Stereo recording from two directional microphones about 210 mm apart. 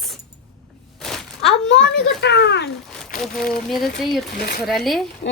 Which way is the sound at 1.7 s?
55° left (ahead or behind).